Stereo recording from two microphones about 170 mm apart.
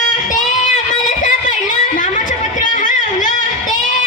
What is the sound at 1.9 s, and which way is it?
Music, 50° left (ahead or behind).